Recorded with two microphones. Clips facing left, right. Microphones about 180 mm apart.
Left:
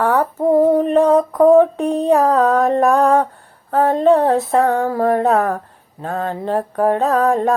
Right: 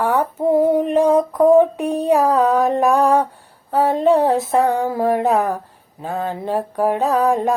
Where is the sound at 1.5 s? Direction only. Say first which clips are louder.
Left 2 dB; 15° right (ahead or behind).